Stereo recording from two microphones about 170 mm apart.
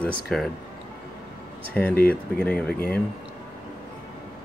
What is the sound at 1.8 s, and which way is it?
Speech, 10° left (ahead or behind).